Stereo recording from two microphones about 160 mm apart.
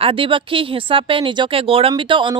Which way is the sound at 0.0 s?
35° right (ahead or behind).